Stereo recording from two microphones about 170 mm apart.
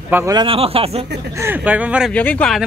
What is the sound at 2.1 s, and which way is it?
Speech, 10° left (ahead or behind).